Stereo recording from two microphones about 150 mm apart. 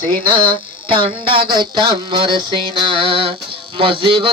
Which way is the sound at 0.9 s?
35° right (ahead or behind).